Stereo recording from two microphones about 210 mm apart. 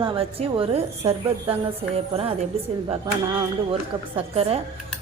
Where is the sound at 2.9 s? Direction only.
25° right (ahead or behind).